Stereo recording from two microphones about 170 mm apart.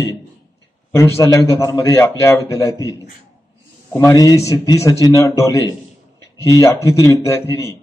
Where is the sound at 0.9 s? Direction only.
20° left (ahead or behind).